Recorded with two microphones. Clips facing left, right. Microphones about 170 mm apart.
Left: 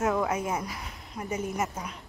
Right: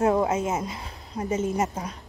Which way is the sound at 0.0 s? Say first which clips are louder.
Right 5 dB; 30° right (ahead or behind).